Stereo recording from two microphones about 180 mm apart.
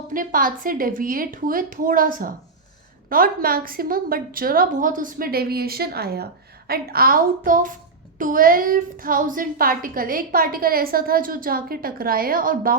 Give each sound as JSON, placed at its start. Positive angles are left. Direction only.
{"t": 0.1, "sound": "a woman's voice", "side_deg": -50}